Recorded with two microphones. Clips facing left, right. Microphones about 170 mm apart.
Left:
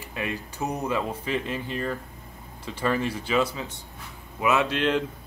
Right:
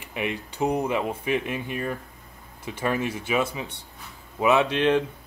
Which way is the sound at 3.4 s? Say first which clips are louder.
Left 1 dB; 25° right (ahead or behind).